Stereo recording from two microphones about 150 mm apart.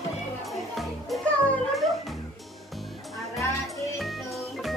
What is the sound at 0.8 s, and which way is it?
Music, centre (ahead or behind).